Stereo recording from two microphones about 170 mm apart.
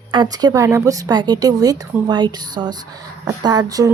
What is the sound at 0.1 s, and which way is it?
Speech, 25° right (ahead or behind).